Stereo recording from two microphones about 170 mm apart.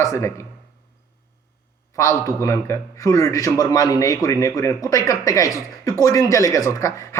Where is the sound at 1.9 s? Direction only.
20° left (ahead or behind).